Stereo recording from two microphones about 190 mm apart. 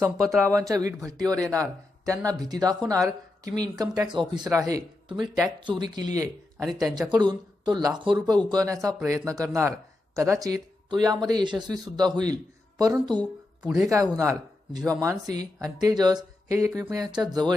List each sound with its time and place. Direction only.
0.3 s speech: 15° right (ahead or behind)
13.6 s speech: 5° right (ahead or behind)
13.9 s speech: 15° right (ahead or behind)